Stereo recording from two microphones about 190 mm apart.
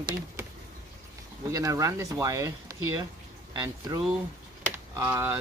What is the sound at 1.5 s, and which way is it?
Speech, 15° right (ahead or behind).